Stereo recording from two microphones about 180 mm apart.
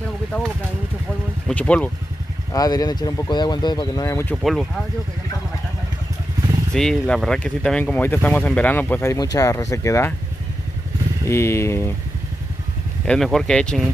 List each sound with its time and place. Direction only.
1.5 s speech: 5° left (ahead or behind)
2.5 s speech: 20° left (ahead or behind)
4.4 s speech: centre (ahead or behind)
6.7 s speech: 5° left (ahead or behind)
11.2 s speech: 15° left (ahead or behind)
13.0 s speech: 5° left (ahead or behind)